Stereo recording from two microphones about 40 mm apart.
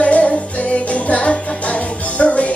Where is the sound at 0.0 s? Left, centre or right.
Left.